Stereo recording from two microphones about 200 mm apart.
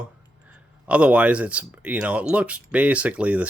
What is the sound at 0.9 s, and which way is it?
Speech, 5° right (ahead or behind).